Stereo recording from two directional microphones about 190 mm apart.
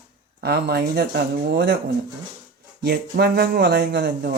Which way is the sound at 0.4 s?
55° right (ahead or behind).